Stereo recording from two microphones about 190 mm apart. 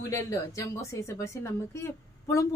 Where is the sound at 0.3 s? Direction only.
15° left (ahead or behind).